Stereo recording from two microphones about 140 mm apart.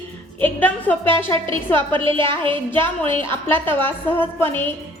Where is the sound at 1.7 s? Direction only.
40° right (ahead or behind).